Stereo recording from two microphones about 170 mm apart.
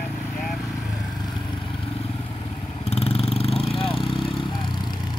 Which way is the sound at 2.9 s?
35° left (ahead or behind).